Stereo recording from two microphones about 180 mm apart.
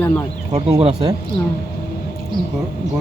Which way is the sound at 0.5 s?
35° right (ahead or behind).